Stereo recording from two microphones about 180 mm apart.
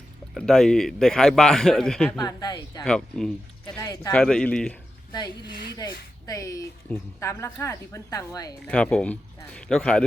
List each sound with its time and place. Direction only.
0.3 s speech: centre (ahead or behind)
2.2 s a woman's voice: 25° left (ahead or behind)
2.8 s speech: 5° left (ahead or behind)
3.8 s a woman's voice: 20° left (ahead or behind)
4.1 s speech: 5° left (ahead or behind)
5.7 s a woman's voice: 20° left (ahead or behind)
8.6 s speech: 5° left (ahead or behind)